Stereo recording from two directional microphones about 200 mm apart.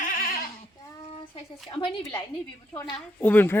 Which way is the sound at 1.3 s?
25° left (ahead or behind).